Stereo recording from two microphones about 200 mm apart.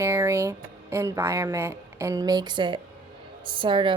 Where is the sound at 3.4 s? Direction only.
25° right (ahead or behind).